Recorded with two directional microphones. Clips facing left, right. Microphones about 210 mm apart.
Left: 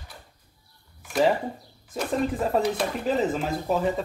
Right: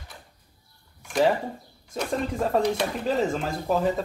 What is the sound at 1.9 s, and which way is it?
A man's voice, 5° left (ahead or behind).